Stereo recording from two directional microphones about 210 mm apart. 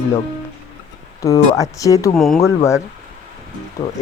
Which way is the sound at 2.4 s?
15° left (ahead or behind).